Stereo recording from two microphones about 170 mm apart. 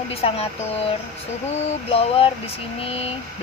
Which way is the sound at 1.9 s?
35° left (ahead or behind).